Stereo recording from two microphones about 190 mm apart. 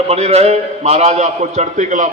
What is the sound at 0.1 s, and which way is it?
A man's voice, 35° right (ahead or behind).